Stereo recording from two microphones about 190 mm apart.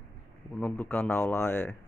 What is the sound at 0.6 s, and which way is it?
Speech, 10° left (ahead or behind).